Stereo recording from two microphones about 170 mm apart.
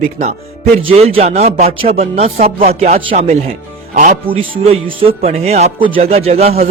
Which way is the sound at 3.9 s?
50° right (ahead or behind).